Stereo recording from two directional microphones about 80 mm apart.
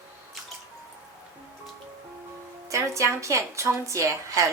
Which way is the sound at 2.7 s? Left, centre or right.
Right.